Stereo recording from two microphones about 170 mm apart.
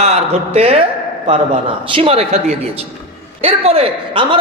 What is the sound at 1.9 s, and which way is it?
Speech, 35° right (ahead or behind).